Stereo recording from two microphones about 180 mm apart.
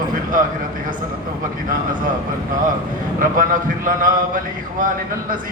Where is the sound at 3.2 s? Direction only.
50° right (ahead or behind).